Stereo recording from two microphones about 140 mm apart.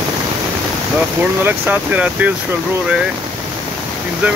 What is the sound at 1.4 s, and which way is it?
Speech, 15° right (ahead or behind).